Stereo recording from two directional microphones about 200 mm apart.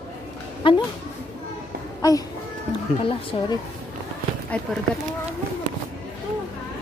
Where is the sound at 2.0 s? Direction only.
20° left (ahead or behind).